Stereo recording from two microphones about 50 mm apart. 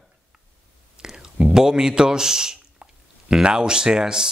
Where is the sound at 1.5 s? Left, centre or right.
Centre.